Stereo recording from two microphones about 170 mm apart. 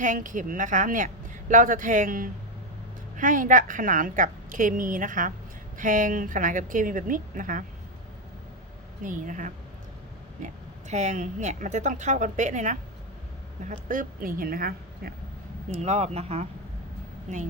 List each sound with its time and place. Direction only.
0.0 s a woman's voice: 50° right (ahead or behind)
9.0 s a woman's voice: 50° right (ahead or behind)
15.7 s speech: 40° right (ahead or behind)